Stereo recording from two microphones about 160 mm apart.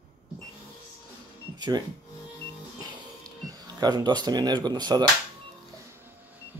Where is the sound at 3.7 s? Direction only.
25° right (ahead or behind).